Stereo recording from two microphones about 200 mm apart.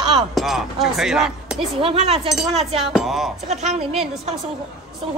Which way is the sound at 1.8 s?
30° right (ahead or behind).